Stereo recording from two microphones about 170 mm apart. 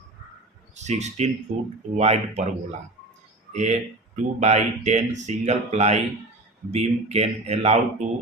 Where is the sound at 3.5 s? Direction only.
45° right (ahead or behind).